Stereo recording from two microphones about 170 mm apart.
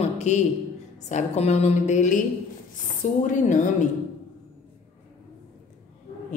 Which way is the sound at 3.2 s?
50° left (ahead or behind).